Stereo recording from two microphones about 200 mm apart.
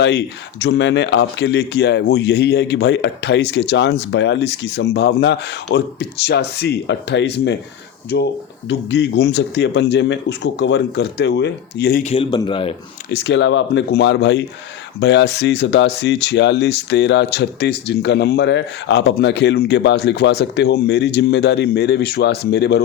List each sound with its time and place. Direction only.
0.0 s speech: 60° left (ahead or behind)
8.9 s speech: 55° left (ahead or behind)
12.1 s a man's voice: 25° left (ahead or behind)
13.1 s speech: 60° left (ahead or behind)